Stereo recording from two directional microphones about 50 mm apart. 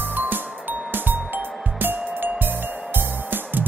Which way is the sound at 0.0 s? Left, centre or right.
Right.